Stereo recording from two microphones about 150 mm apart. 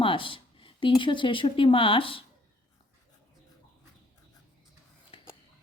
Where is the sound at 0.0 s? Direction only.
35° left (ahead or behind).